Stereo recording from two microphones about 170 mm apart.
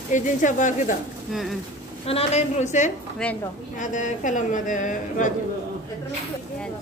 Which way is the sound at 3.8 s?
50° left (ahead or behind).